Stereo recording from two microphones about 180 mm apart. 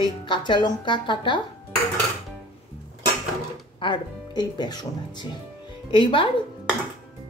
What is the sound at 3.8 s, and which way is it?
Speech, 25° left (ahead or behind).